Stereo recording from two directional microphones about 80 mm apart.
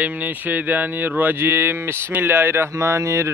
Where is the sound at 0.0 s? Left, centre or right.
Right.